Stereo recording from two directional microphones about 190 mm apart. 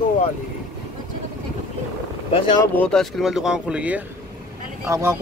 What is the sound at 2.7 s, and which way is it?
Speech, 5° left (ahead or behind).